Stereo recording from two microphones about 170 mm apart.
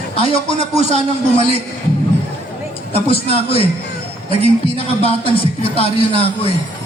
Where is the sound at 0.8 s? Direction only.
40° right (ahead or behind).